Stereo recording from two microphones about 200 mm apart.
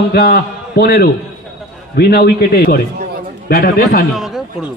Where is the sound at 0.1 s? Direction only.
50° left (ahead or behind).